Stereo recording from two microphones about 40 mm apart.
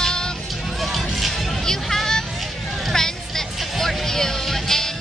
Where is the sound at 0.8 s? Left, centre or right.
Centre.